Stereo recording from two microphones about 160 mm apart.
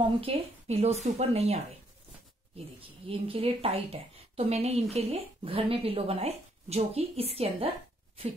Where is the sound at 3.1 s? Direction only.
35° right (ahead or behind).